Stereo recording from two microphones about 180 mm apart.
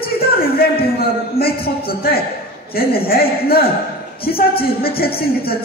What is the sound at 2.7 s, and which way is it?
A man's voice, 55° left (ahead or behind).